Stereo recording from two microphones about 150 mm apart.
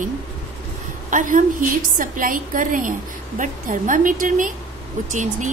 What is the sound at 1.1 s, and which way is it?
A woman's voice, 60° right (ahead or behind).